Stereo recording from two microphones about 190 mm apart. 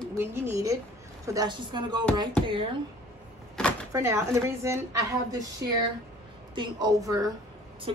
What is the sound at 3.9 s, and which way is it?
A woman's voice, 15° right (ahead or behind).